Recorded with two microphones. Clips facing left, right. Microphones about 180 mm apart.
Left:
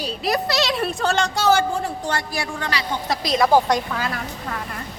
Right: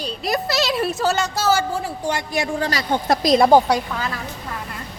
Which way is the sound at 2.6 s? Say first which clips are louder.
Right 4 dB; 45° right (ahead or behind).